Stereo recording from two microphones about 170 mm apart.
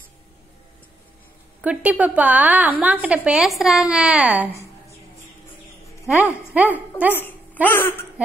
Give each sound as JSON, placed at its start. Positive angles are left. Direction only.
{"t": 1.6, "sound": "a woman's voice", "side_deg": -10}
{"t": 6.0, "sound": "a woman's voice", "side_deg": -10}
{"t": 7.6, "sound": "speech", "side_deg": 10}